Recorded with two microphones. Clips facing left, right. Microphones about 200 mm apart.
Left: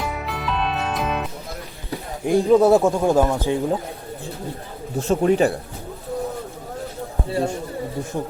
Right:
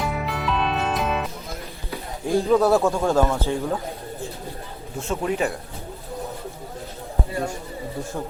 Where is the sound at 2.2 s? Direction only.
15° left (ahead or behind).